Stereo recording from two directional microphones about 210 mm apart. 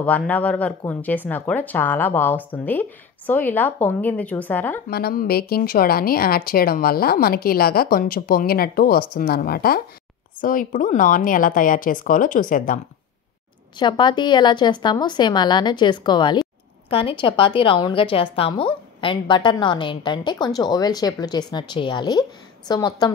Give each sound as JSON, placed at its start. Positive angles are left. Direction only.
{"t": 0.0, "sound": "speech", "side_deg": 5}
{"t": 4.8, "sound": "speech", "side_deg": 45}
{"t": 13.7, "sound": "a woman's voice", "side_deg": 20}